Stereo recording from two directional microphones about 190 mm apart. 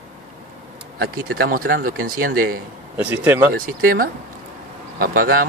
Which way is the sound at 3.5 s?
50° right (ahead or behind).